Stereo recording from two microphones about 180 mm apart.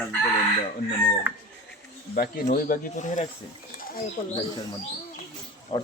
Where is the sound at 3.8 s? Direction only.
55° left (ahead or behind).